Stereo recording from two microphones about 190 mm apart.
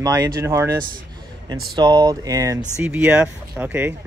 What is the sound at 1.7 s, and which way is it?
Speech, 20° right (ahead or behind).